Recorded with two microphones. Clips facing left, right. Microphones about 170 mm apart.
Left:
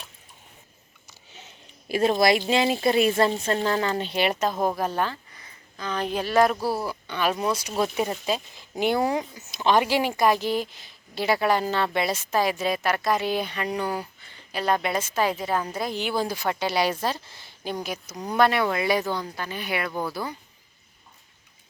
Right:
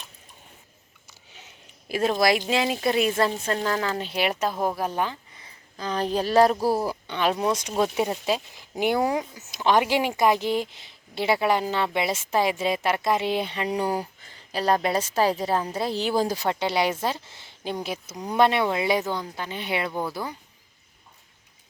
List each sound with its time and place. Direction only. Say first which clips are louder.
1.9 s speech: left 1 dB; centre (ahead or behind)
5.4 s speech: right 2 dB; 35° right (ahead or behind)
7.1 s a woman's voice: right 1 dB; 20° right (ahead or behind)
18.1 s speech: even; 5° right (ahead or behind)
18.3 s speech: right 1 dB; 25° right (ahead or behind)